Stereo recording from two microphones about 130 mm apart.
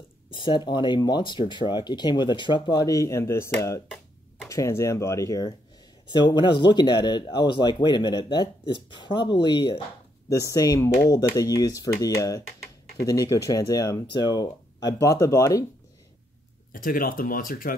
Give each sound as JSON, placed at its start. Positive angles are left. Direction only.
{"t": 0.3, "sound": "speech", "side_deg": 35}
{"t": 2.8, "sound": "speech", "side_deg": 25}
{"t": 6.1, "sound": "speech", "side_deg": 35}
{"t": 10.3, "sound": "speech", "side_deg": 25}
{"t": 16.7, "sound": "speech", "side_deg": 90}